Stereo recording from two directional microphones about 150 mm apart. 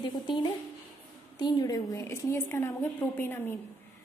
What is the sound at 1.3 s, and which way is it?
A woman's voice, 25° left (ahead or behind).